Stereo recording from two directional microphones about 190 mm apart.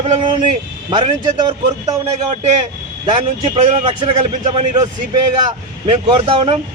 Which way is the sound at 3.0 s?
30° right (ahead or behind).